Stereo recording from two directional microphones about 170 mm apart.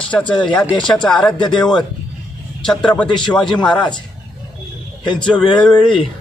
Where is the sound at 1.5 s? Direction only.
25° left (ahead or behind).